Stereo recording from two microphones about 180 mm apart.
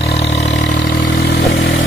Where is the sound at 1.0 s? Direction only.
60° left (ahead or behind).